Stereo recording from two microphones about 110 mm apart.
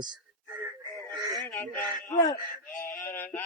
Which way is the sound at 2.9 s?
20° left (ahead or behind).